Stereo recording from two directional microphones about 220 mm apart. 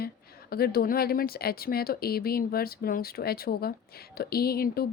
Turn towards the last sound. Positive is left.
turn(degrees=45)  # may be behind; listen again after turning